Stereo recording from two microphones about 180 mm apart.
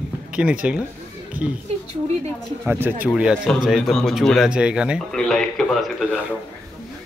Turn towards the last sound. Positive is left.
turn(degrees=0)  # may be behind; listen again after turning